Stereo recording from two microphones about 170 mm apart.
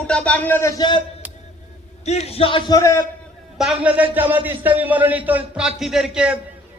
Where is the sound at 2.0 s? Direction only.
40° left (ahead or behind); by 3.0 s 15° left (ahead or behind).